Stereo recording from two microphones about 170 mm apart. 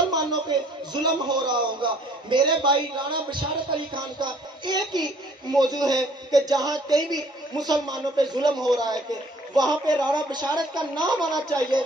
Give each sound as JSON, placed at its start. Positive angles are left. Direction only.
{"t": 0.1, "sound": "a man's voice", "side_deg": -25}